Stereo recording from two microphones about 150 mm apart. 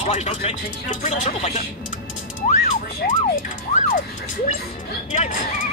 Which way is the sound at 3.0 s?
90° left.